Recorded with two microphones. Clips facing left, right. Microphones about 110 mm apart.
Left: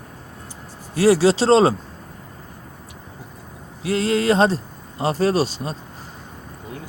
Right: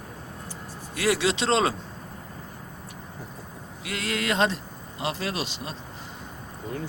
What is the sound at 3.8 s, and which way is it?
Speech, 30° left (ahead or behind).